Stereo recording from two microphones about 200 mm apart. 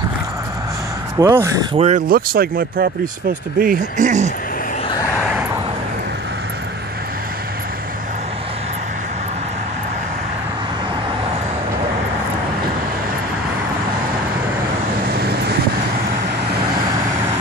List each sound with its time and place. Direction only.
1.2 s speech: 15° right (ahead or behind)
1.8 s speech: 40° right (ahead or behind)
5.1 s vehicle: 5° right (ahead or behind)